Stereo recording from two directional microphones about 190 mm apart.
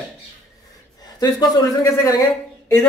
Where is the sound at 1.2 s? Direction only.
20° left (ahead or behind).